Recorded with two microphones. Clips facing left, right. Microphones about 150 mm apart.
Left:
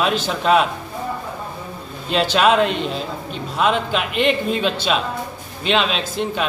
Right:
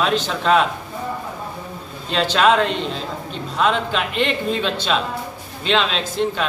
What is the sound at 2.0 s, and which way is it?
A man's voice, 10° left (ahead or behind).